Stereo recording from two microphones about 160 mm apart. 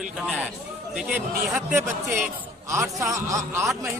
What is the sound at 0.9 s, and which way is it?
Speech, 5° right (ahead or behind).